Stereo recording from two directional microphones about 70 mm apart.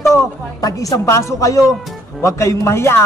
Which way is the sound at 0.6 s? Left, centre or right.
Left.